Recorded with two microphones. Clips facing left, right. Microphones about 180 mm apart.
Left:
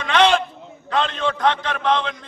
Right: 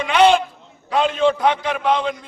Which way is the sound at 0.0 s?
10° right (ahead or behind).